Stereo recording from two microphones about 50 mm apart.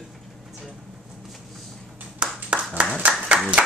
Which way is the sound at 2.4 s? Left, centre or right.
Right.